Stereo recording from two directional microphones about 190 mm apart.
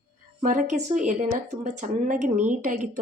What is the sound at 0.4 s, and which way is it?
A woman's voice, 45° right (ahead or behind).